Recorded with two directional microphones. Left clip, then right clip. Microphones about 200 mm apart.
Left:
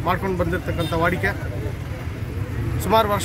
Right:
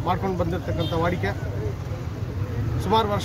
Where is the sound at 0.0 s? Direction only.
Centre (ahead or behind).